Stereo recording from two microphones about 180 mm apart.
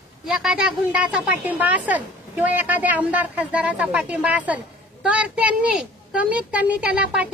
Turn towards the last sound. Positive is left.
turn(degrees=-5)  # may be behind; listen again after turning